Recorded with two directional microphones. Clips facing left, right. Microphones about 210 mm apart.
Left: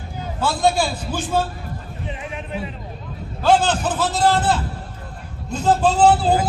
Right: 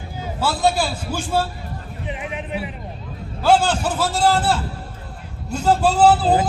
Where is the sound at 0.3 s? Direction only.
5° right (ahead or behind).